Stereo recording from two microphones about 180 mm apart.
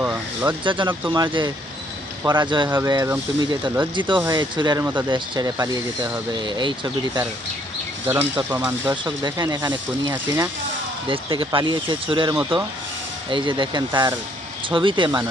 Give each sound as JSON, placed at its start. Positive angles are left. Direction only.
{"t": 0.0, "sound": "speech", "side_deg": -10}
{"t": 0.6, "sound": "speech", "side_deg": -25}
{"t": 1.0, "sound": "speech", "side_deg": -15}
{"t": 1.3, "sound": "speech", "side_deg": -25}
{"t": 2.6, "sound": "speech", "side_deg": -15}
{"t": 8.0, "sound": "speech", "side_deg": -10}
{"t": 9.0, "sound": "speech", "side_deg": -25}
{"t": 11.1, "sound": "speech", "side_deg": -30}